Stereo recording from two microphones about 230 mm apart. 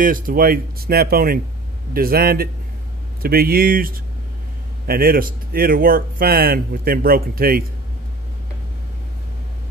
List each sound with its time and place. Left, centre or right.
0.0 s speech: right